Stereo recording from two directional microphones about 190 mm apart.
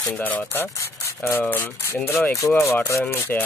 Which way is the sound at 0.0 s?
5° left (ahead or behind).